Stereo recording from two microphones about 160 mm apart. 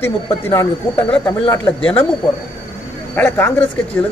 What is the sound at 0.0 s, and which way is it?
Speech, 15° left (ahead or behind).